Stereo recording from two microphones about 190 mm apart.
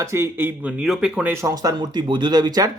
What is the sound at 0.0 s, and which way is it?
Speech, 15° right (ahead or behind).